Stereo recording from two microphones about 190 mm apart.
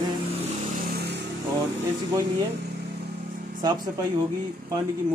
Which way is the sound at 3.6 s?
20° right (ahead or behind).